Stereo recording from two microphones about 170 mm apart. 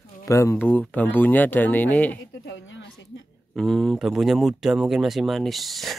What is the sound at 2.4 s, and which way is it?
Speech, 90° left.